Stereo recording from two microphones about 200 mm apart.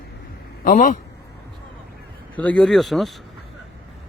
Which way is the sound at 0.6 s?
40° left (ahead or behind).